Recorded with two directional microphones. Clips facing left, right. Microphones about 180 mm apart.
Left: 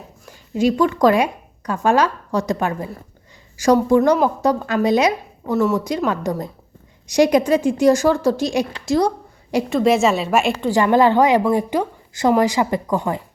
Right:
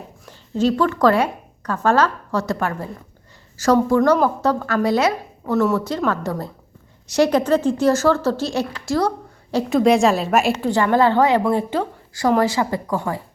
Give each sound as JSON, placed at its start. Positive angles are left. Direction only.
{"t": 0.5, "sound": "a woman's voice", "side_deg": 15}
{"t": 9.6, "sound": "a woman's voice", "side_deg": 0}
{"t": 10.7, "sound": "speech", "side_deg": 15}